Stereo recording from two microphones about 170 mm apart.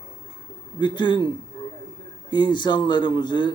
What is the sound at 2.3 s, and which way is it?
A man's voice, 25° left (ahead or behind).